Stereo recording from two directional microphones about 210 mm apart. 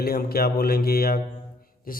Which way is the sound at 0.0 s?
45° left (ahead or behind).